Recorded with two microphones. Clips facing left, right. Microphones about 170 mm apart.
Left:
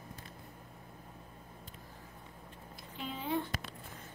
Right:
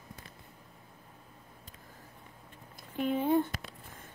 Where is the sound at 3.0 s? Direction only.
55° right (ahead or behind).